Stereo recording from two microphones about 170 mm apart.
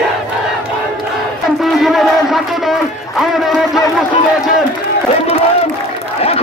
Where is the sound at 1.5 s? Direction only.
Centre (ahead or behind).